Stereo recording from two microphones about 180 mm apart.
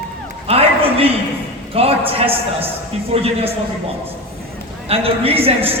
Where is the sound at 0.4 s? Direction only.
35° right (ahead or behind).